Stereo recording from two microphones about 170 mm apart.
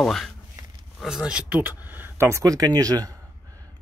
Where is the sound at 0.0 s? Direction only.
Centre (ahead or behind).